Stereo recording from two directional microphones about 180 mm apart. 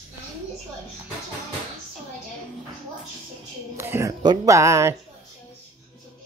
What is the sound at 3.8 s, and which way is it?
Speech, 15° right (ahead or behind).